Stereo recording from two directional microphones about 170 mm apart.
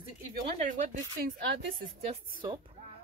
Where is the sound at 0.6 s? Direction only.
45° right (ahead or behind).